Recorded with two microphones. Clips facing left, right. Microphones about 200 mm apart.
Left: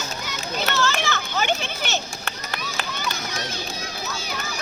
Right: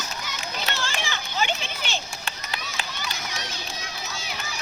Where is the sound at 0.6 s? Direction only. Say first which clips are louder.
Left 8 dB; 45° left (ahead or behind).